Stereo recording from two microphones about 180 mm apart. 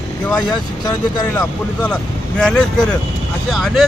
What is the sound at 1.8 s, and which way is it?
Speech, 5° left (ahead or behind).